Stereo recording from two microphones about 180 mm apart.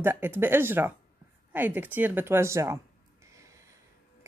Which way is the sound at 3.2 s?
15° right (ahead or behind).